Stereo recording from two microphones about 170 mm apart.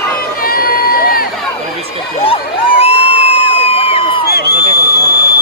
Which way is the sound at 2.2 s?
35° left (ahead or behind).